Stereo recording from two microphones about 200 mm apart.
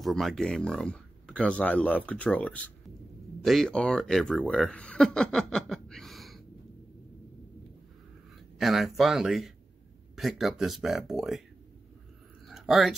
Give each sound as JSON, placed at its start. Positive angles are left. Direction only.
{"t": 0.0, "sound": "speech", "side_deg": 0}
{"t": 8.5, "sound": "speech", "side_deg": 0}
{"t": 12.4, "sound": "a sound", "side_deg": 0}